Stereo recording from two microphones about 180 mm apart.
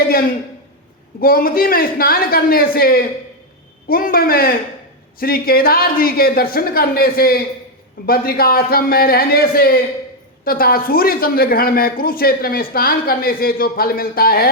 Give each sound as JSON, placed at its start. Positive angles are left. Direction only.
{"t": 1.2, "sound": "speech", "side_deg": 55}